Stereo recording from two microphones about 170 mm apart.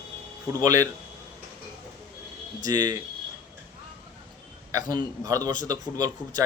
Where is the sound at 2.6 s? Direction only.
20° right (ahead or behind).